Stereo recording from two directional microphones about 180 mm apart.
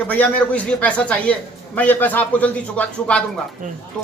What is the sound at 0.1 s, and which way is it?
A man's voice, 10° left (ahead or behind).